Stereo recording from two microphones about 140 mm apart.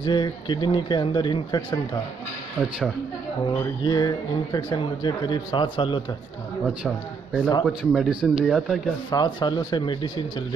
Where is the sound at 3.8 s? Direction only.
30° left (ahead or behind).